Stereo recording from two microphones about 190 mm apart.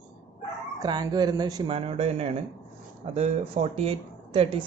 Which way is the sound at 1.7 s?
35° right (ahead or behind).